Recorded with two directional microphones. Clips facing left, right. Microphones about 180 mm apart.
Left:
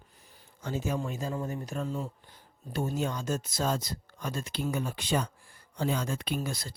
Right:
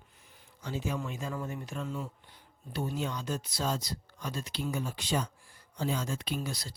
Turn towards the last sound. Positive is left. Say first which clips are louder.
# left 2 dB
turn(degrees=50)  # may be behind; listen again after turning